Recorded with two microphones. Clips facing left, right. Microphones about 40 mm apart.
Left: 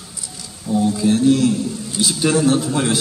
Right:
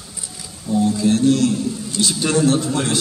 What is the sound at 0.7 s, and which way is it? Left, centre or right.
A man's voice, centre.